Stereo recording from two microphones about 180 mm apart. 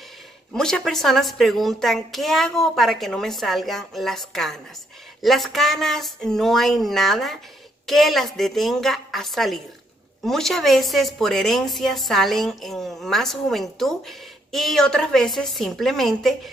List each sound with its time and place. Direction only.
0.5 s a woman's voice: 5° left (ahead or behind)